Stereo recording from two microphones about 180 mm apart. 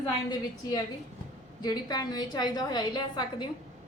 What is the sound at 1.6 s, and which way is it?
A woman's voice, 20° left (ahead or behind).